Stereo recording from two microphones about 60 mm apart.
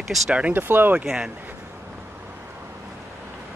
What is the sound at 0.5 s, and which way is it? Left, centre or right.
Speech, right.